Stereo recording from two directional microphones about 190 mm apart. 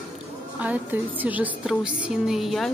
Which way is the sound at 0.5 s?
10° right (ahead or behind).